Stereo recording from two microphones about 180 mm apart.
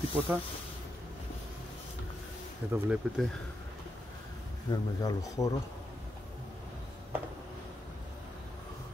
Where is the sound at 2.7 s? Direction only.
5° right (ahead or behind).